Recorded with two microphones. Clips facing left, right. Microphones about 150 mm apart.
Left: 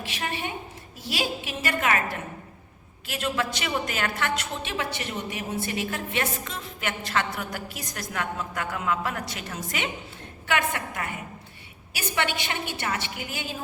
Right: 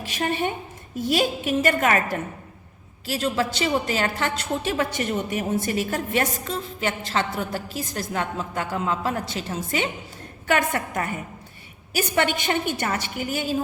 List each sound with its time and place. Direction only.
0.0 s a woman's voice: 45° right (ahead or behind)
10.4 s a woman's voice: 40° right (ahead or behind)